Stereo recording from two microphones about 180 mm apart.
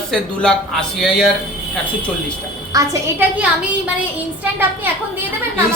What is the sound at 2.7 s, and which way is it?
Speech, 20° right (ahead or behind).